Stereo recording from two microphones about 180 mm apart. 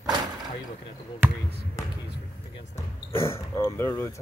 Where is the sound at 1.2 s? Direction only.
10° right (ahead or behind).